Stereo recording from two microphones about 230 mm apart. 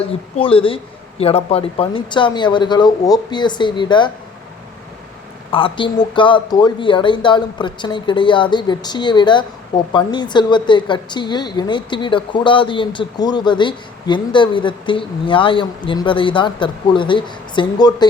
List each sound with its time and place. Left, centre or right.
0.1 s speech: left
5.5 s a woman's voice: left